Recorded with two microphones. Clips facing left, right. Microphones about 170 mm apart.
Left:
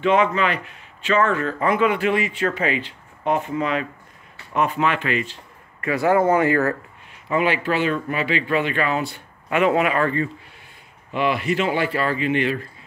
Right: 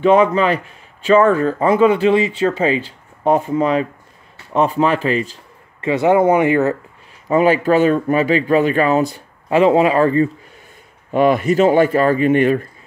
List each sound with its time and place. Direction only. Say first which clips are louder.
0.0 s speech: right 6 dB; 40° right (ahead or behind)
5.8 s speech: right 5 dB; 25° right (ahead or behind)
7.2 s speech: right 7 dB; 40° right (ahead or behind)
11.1 s speech: right 8 dB; 45° right (ahead or behind)